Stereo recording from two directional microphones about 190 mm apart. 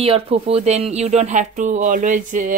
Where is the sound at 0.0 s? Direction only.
30° right (ahead or behind).